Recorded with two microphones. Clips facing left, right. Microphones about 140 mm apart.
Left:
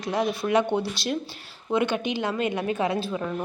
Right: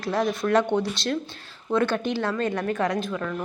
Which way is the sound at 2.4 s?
10° left (ahead or behind).